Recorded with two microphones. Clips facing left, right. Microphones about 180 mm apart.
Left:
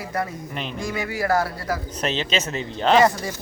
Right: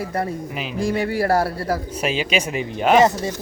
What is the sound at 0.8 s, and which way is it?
Speech, 30° right (ahead or behind).